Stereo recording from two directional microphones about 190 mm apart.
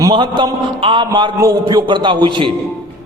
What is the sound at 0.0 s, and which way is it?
A man's voice, 25° right (ahead or behind).